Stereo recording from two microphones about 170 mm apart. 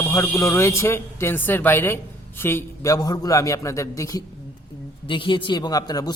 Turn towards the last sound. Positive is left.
turn(degrees=20)  # may be behind; listen again after turning